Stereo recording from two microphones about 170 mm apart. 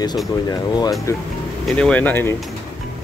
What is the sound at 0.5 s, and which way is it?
Speech, 20° left (ahead or behind).